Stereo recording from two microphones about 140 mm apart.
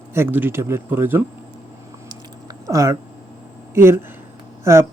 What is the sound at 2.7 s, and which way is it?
Speech, 20° right (ahead or behind).